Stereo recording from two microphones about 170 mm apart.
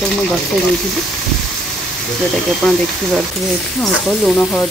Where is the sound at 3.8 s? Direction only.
Centre (ahead or behind).